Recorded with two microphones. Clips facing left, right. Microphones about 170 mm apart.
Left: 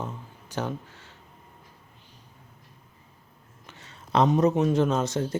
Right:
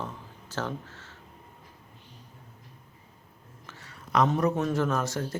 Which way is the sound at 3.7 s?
20° left (ahead or behind).